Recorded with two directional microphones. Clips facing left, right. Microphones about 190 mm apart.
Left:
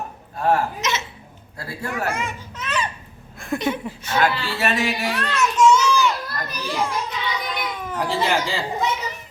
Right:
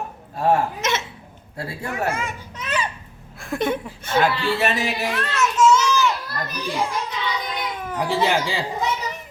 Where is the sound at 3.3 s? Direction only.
Centre (ahead or behind).